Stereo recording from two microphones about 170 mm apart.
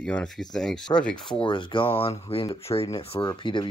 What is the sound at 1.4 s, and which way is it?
Speech, 30° left (ahead or behind).